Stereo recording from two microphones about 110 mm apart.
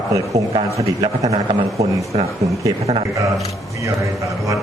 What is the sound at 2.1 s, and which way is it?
Speech, 55° right (ahead or behind).